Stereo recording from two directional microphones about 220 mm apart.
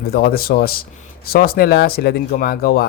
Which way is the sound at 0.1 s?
45° left (ahead or behind).